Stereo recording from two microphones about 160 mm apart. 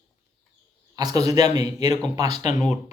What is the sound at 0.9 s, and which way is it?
Speech, 25° right (ahead or behind).